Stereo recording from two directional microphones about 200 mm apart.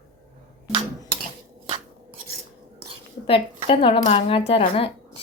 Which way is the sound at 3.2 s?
25° left (ahead or behind).